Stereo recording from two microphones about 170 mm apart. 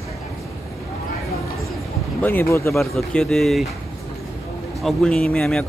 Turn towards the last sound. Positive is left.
turn(degrees=5)  # may be behind; listen again after turning